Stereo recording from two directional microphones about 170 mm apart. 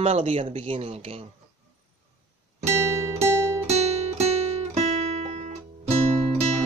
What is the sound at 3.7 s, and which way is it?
Music, 40° right (ahead or behind).